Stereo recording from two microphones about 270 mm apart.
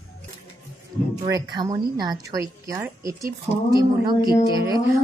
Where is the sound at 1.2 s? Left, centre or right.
Centre.